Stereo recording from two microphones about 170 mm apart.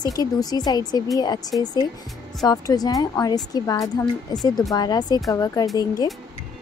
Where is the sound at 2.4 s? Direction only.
20° left (ahead or behind).